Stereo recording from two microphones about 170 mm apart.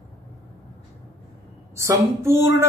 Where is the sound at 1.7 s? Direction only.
15° right (ahead or behind).